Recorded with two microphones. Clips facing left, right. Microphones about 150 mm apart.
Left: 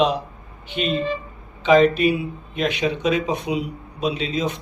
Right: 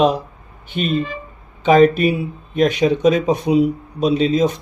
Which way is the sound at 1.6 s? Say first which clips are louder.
Right 3 dB; 45° right (ahead or behind).